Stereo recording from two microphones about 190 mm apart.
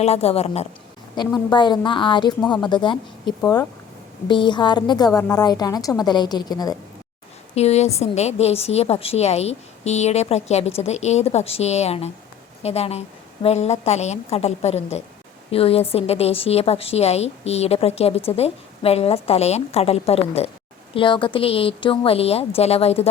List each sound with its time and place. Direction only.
0.0 s a woman's voice: 35° left (ahead or behind)
1.1 s a woman's voice: 25° left (ahead or behind)
7.5 s a woman's voice: 35° left (ahead or behind)